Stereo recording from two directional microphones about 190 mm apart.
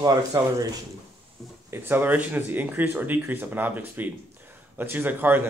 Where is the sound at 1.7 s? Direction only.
10° right (ahead or behind).